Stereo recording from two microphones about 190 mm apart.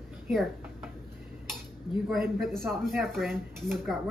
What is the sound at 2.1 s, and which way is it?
Speech, centre (ahead or behind).